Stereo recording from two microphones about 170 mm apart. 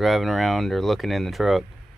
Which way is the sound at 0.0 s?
Centre (ahead or behind).